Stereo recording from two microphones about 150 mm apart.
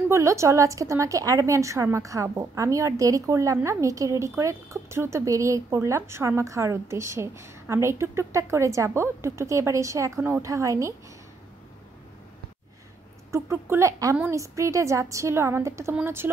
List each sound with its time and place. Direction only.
0.1 s a woman's voice: 20° right (ahead or behind)
13.3 s a woman's voice: 20° right (ahead or behind)